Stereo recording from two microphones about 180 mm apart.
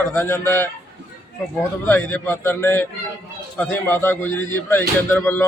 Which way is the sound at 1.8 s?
10° left (ahead or behind).